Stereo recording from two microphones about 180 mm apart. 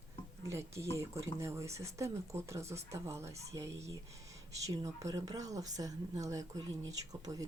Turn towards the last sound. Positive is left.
turn(degrees=-20)  # may be behind; listen again after turning